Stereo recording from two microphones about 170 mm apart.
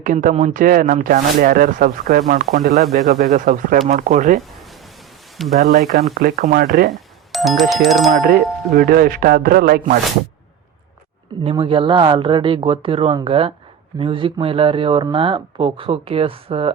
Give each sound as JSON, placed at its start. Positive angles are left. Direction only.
{"t": 0.0, "sound": "speech", "side_deg": -50}
{"t": 5.6, "sound": "speech", "side_deg": -65}
{"t": 6.9, "sound": "speech", "side_deg": 0}
{"t": 8.1, "sound": "speech", "side_deg": -60}
{"t": 11.4, "sound": "speech", "side_deg": -30}